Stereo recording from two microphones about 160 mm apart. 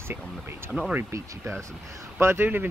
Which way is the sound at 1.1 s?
15° right (ahead or behind).